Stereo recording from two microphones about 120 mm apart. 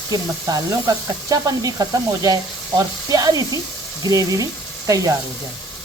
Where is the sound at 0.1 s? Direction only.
30° right (ahead or behind).